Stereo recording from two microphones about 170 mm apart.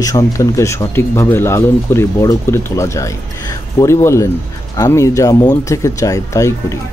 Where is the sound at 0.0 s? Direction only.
20° left (ahead or behind).